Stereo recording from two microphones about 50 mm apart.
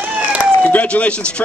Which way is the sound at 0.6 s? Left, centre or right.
Left.